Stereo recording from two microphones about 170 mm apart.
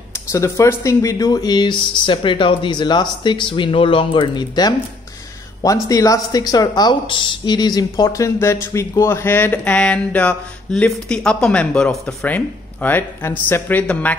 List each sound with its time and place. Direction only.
0.3 s speech: 15° left (ahead or behind)